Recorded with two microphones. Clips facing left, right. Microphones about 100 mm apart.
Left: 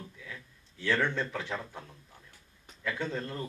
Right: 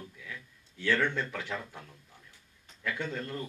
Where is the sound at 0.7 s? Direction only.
30° left (ahead or behind).